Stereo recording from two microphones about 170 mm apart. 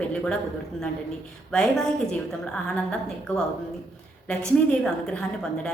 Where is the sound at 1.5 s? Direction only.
5° left (ahead or behind).